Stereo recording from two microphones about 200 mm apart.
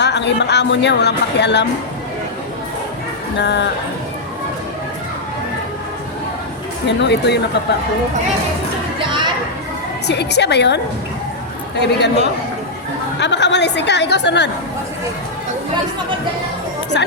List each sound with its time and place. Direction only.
0.0 s a woman's voice: 60° left (ahead or behind)
3.3 s a woman's voice: 60° left (ahead or behind)
6.8 s a woman's voice: 60° left (ahead or behind)
9.0 s a sound: 25° right (ahead or behind)
10.1 s a woman's voice: 55° left (ahead or behind)
11.8 s a woman's voice: 60° left (ahead or behind)
13.1 s a woman's voice: 60° left (ahead or behind)